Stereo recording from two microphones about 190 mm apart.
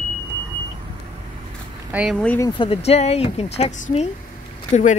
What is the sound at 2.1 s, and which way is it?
Speech, 5° left (ahead or behind).